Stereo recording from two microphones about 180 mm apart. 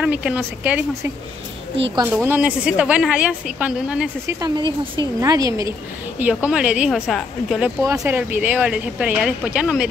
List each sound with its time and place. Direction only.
0.0 s a woman's voice: 5° right (ahead or behind)
2.1 s a woman's voice: 10° right (ahead or behind)
4.4 s a woman's voice: 25° right (ahead or behind); by 9.8 s 5° right (ahead or behind)